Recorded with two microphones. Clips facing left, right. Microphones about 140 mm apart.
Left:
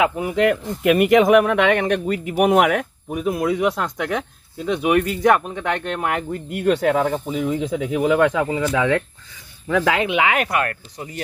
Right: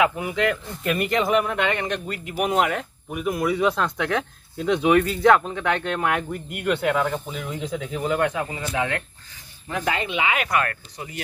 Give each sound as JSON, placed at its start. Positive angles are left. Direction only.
{"t": 0.0, "sound": "speech", "side_deg": 40}
{"t": 3.3, "sound": "speech", "side_deg": 20}
{"t": 6.5, "sound": "speech", "side_deg": 35}
{"t": 7.2, "sound": "speech", "side_deg": 55}
{"t": 9.8, "sound": "speech", "side_deg": 90}
{"t": 10.7, "sound": "speech", "side_deg": 35}